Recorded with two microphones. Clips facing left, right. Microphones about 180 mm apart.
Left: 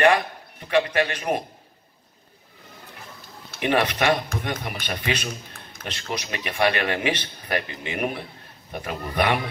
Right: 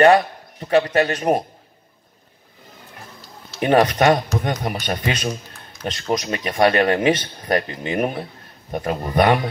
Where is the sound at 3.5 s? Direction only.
40° right (ahead or behind).